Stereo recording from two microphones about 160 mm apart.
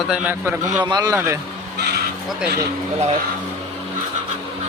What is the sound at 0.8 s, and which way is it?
Speech, 25° right (ahead or behind).